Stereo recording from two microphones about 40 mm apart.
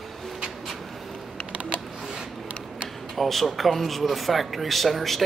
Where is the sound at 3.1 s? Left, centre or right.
Centre.